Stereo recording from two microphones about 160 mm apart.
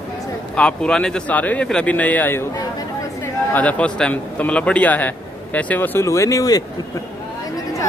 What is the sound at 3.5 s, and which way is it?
Speech, 10° left (ahead or behind).